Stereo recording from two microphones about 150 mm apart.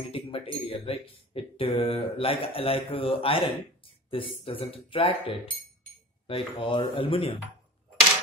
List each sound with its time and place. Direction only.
0.1 s speech: 40° left (ahead or behind)